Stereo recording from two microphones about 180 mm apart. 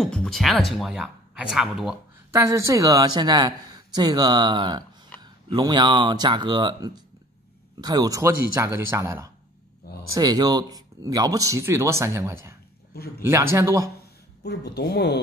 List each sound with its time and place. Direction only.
0.0 s speech: 5° left (ahead or behind)
2.3 s speech: 15° right (ahead or behind)
14.4 s speech: 65° left (ahead or behind)